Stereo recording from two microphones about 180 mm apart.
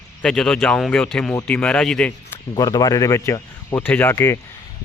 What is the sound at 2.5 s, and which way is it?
Speech, 20° left (ahead or behind).